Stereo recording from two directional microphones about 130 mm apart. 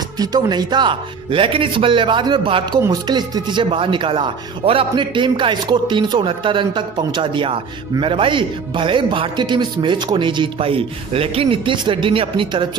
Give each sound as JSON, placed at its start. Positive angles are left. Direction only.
{"t": 0.2, "sound": "speech", "side_deg": -30}